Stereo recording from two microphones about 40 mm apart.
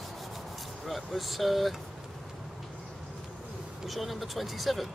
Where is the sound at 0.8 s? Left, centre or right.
Centre.